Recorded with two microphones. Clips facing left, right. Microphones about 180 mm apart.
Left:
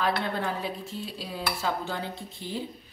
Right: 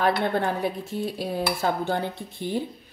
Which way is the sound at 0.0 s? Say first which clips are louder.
Right 5 dB; 55° right (ahead or behind).